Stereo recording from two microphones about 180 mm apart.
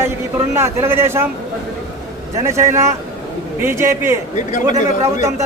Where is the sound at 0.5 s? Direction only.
15° right (ahead or behind).